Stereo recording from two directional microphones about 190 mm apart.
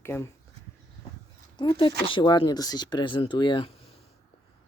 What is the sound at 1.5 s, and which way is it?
Speech, 25° left (ahead or behind).